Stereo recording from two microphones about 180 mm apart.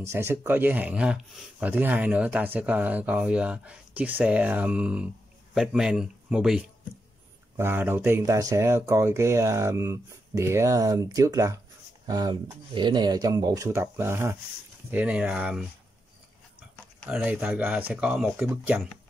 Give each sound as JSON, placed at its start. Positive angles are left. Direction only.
{"t": 0.0, "sound": "speech", "side_deg": -15}
{"t": 17.1, "sound": "speech", "side_deg": -10}